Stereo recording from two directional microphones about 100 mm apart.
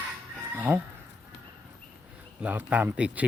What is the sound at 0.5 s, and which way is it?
Speech, 20° right (ahead or behind).